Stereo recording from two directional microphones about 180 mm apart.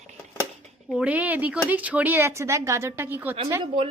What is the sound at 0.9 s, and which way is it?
Speech, 5° right (ahead or behind).